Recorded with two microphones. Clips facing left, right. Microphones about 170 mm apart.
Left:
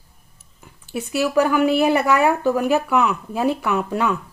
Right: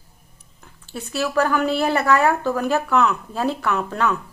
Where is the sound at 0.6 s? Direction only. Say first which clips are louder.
Left 5 dB; 10° left (ahead or behind).